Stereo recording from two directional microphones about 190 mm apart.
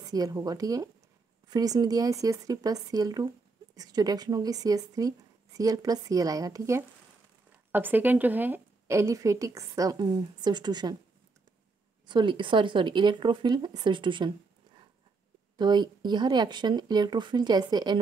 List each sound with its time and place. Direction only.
0.1 s a woman's voice: 20° right (ahead or behind)
12.1 s speech: 25° right (ahead or behind)
15.5 s speech: 20° right (ahead or behind)